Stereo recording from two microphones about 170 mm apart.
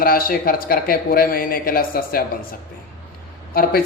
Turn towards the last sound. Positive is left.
turn(degrees=60)  # may be behind; listen again after turning